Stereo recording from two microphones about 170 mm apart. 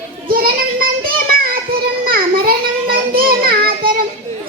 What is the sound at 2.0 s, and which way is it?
Child singing, 60° right (ahead or behind).